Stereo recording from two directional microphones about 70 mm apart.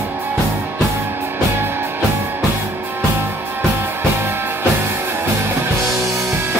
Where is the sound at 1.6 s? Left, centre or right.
Right.